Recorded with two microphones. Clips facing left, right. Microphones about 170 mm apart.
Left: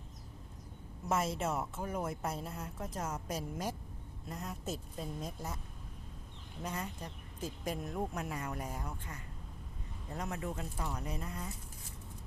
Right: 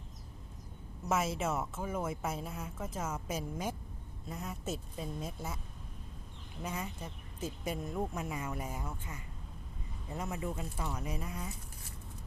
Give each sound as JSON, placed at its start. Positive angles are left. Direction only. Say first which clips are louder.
{"t": 1.0, "sound": "a woman's voice", "louder": "right 1 dB", "side_deg": -5}
{"t": 6.6, "sound": "a woman's voice", "louder": "right 1 dB", "side_deg": -5}